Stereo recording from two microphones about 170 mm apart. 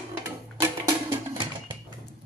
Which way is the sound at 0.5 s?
20° right (ahead or behind).